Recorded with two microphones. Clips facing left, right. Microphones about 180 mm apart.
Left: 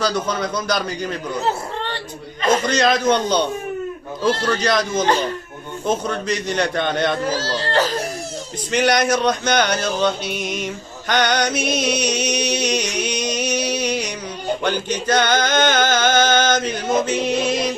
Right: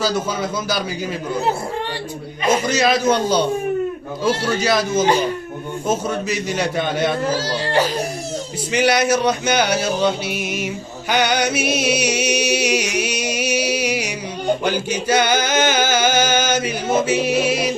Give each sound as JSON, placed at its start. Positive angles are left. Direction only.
{"t": 0.0, "sound": "a man's voice", "side_deg": -5}
{"t": 2.4, "sound": "music", "side_deg": -10}